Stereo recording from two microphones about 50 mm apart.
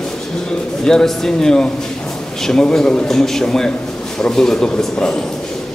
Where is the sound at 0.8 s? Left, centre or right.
Centre.